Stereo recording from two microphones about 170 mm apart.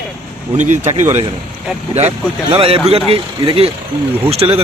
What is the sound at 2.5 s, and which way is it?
Speech, 35° right (ahead or behind).